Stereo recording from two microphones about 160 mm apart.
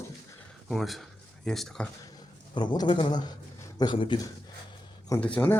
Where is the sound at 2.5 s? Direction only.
30° left (ahead or behind).